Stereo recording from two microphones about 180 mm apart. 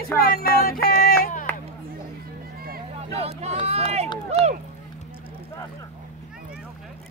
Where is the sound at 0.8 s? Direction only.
55° left (ahead or behind).